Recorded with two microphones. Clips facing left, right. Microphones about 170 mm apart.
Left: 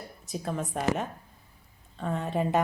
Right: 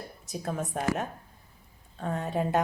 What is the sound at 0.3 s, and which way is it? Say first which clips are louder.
Speech: left 1 dB; centre (ahead or behind).